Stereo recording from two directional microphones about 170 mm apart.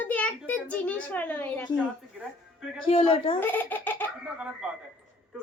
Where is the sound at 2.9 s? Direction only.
30° left (ahead or behind).